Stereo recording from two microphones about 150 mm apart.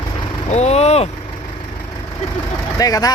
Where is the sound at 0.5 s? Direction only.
45° left (ahead or behind).